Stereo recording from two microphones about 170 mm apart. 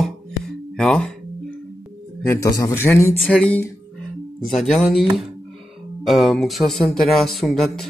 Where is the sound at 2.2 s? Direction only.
15° left (ahead or behind).